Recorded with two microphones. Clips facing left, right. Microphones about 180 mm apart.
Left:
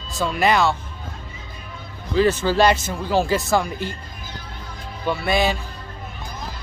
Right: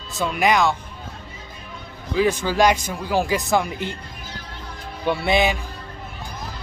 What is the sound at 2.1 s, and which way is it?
A man's voice, 10° right (ahead or behind).